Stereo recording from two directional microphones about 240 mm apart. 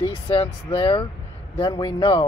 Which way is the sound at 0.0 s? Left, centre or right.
Left.